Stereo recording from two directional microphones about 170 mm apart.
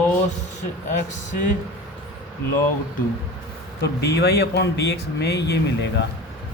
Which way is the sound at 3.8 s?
75° left (ahead or behind).